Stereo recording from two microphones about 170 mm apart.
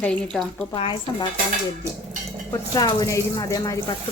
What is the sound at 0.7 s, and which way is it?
Frying, 30° left (ahead or behind).